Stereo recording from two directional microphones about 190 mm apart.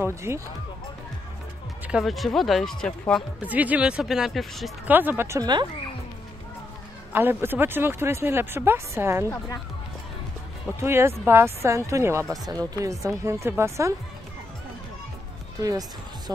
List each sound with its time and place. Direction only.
0.0 s speech: 15° right (ahead or behind)
1.9 s speech: centre (ahead or behind)
3.3 s speech: 10° right (ahead or behind)
4.9 s speech: 10° right (ahead or behind)
7.1 s speech: 10° right (ahead or behind)
10.8 s speech: 15° right (ahead or behind)
16.3 s speech: 20° right (ahead or behind)